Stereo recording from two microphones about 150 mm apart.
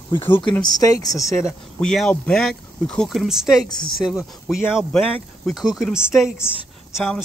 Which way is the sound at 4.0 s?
Centre (ahead or behind).